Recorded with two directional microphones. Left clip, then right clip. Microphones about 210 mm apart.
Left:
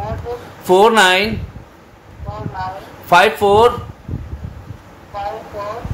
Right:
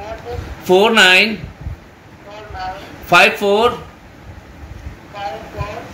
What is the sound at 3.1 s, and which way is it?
Speech, 20° left (ahead or behind).